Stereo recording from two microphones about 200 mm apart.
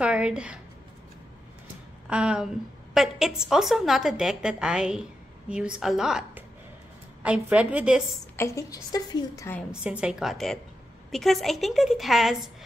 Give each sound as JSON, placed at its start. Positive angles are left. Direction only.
{"t": 0.0, "sound": "a woman's voice", "side_deg": -5}
{"t": 2.0, "sound": "a woman's voice", "side_deg": -5}
{"t": 8.4, "sound": "a woman's voice", "side_deg": 15}
{"t": 9.7, "sound": "a woman's voice", "side_deg": -5}